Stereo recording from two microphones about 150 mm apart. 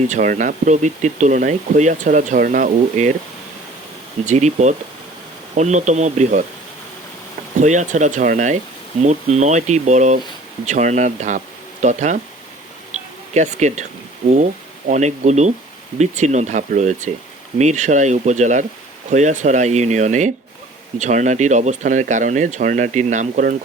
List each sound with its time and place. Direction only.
0.1 s speech: 55° right (ahead or behind)
4.3 s speech: 50° right (ahead or behind)
7.6 s speech: 55° right (ahead or behind)
13.3 s speech: 50° right (ahead or behind)